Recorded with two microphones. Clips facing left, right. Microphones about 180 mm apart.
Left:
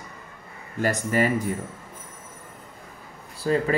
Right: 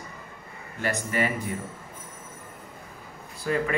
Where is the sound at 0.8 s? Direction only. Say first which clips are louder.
Left 4 dB; 40° left (ahead or behind).